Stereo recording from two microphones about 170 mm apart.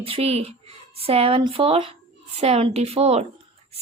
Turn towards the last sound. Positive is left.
turn(degrees=-35)  # may be behind; listen again after turning